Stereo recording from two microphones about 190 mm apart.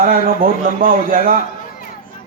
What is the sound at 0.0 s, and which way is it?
A man's voice, 50° right (ahead or behind).